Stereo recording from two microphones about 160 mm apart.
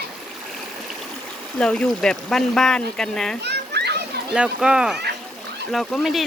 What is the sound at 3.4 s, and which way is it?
Children playing, 90° right.